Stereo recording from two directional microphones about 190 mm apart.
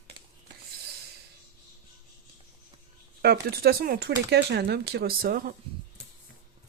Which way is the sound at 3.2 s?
60° right (ahead or behind).